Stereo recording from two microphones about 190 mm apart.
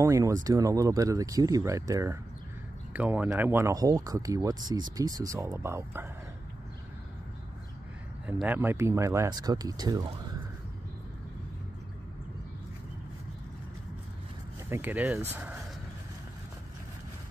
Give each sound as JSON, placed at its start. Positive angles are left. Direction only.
{"t": 0.0, "sound": "speech", "side_deg": -15}
{"t": 8.3, "sound": "speech", "side_deg": -10}
{"t": 14.7, "sound": "speech", "side_deg": -10}